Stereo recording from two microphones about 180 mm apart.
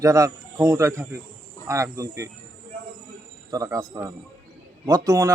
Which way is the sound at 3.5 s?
20° right (ahead or behind).